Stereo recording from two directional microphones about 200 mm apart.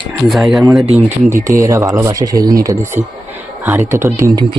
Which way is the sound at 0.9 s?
35° right (ahead or behind).